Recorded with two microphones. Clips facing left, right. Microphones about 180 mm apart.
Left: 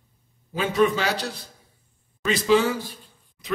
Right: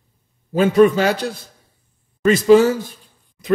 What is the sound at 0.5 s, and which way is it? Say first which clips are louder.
Speech: right 8 dB; 50° right (ahead or behind).